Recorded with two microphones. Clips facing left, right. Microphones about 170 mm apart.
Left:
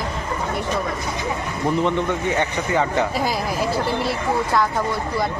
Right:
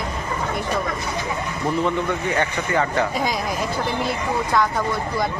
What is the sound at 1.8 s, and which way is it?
Speech, 20° left (ahead or behind).